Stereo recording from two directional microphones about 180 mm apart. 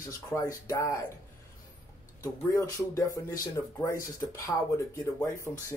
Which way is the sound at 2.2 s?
15° left (ahead or behind).